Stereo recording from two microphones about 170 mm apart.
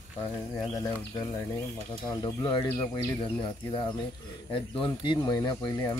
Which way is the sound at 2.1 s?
30° left (ahead or behind).